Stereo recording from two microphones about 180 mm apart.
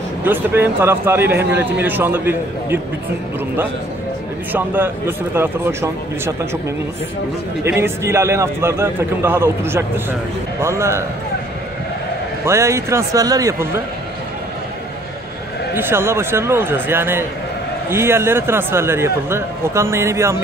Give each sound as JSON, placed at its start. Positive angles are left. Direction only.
{"t": 0.2, "sound": "a man's voice", "side_deg": -10}
{"t": 4.5, "sound": "a man's voice", "side_deg": -10}
{"t": 7.6, "sound": "a man's voice", "side_deg": -15}
{"t": 12.4, "sound": "a man's voice", "side_deg": -15}
{"t": 15.7, "sound": "a man's voice", "side_deg": -15}